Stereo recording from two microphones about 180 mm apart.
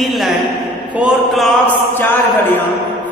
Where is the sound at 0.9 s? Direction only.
Centre (ahead or behind).